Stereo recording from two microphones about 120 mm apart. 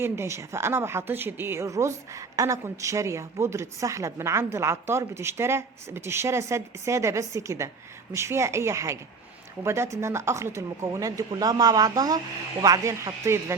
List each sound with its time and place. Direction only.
0.0 s a woman's voice: 20° right (ahead or behind)